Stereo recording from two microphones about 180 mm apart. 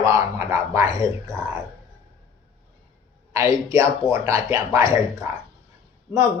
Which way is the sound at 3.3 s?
15° right (ahead or behind).